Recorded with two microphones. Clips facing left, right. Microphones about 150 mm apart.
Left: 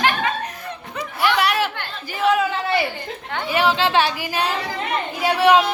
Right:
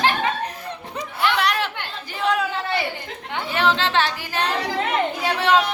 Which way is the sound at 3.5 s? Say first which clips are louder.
Left 2 dB; 10° left (ahead or behind).